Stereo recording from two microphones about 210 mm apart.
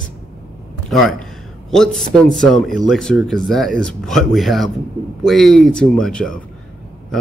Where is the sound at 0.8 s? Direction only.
Centre (ahead or behind).